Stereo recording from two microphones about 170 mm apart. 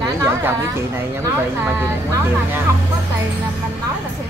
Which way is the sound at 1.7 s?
15° right (ahead or behind).